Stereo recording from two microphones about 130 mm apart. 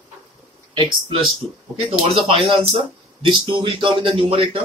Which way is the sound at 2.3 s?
50° right (ahead or behind).